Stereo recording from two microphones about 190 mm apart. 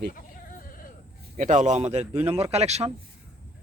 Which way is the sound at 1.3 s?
40° right (ahead or behind).